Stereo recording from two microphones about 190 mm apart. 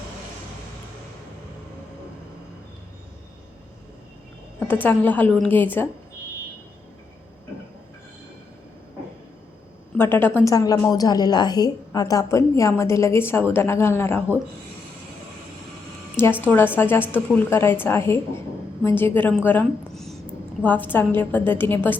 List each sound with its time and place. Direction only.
4.7 s a woman's voice: 10° left (ahead or behind)
10.0 s a woman's voice: 10° left (ahead or behind)
16.4 s a woman's voice: 10° left (ahead or behind)